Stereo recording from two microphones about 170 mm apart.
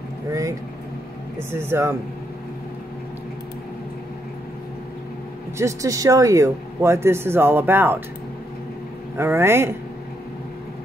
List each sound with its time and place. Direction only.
0.3 s speech: 20° right (ahead or behind)
5.6 s speech: 20° right (ahead or behind)
9.1 s speech: 15° right (ahead or behind)